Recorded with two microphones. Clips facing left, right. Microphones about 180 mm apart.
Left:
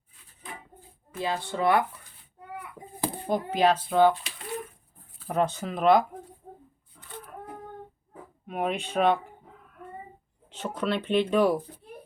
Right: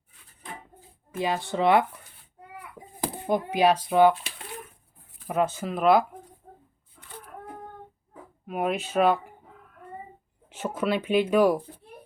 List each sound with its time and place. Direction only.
1.1 s speech: 15° right (ahead or behind)
3.2 s speech: 15° right (ahead or behind)
5.3 s speech: 5° right (ahead or behind)
8.4 s speech: 5° right (ahead or behind)
10.5 s speech: 10° right (ahead or behind)